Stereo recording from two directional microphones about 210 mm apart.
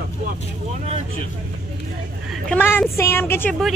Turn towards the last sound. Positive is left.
turn(degrees=10)  # may be behind; listen again after turning